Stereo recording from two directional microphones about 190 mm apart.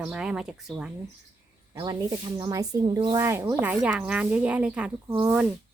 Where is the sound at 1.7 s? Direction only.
20° right (ahead or behind).